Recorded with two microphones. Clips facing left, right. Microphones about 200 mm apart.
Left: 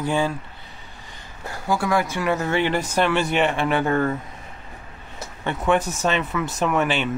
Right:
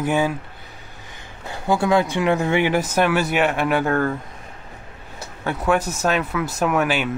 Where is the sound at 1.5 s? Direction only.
20° right (ahead or behind); by 4.2 s centre (ahead or behind).